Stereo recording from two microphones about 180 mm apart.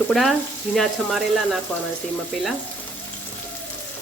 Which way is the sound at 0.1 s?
Centre (ahead or behind).